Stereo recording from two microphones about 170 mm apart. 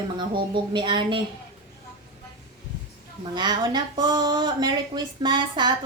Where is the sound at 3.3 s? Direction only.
25° right (ahead or behind).